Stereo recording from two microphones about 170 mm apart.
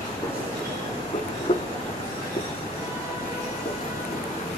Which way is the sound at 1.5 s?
35° left (ahead or behind).